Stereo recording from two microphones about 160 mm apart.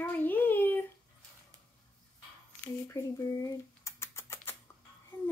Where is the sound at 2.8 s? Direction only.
20° left (ahead or behind).